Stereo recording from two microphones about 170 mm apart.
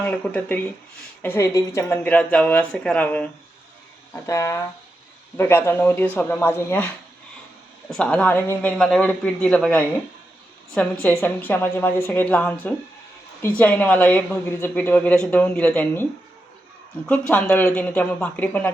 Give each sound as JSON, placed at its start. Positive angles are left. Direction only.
{"t": 0.0, "sound": "a woman's voice", "side_deg": 10}
{"t": 7.9, "sound": "speech", "side_deg": 5}
{"t": 11.0, "sound": "a woman's voice", "side_deg": 10}
{"t": 17.1, "sound": "a woman's voice", "side_deg": 5}